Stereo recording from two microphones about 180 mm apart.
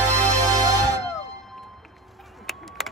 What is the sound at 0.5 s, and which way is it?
Music, 20° right (ahead or behind).